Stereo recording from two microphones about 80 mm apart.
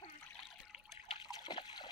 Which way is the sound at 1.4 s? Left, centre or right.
Left.